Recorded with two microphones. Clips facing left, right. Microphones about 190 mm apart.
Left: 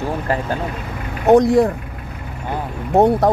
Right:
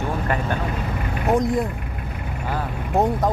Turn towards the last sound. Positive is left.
turn(degrees=70)  # may be behind; listen again after turning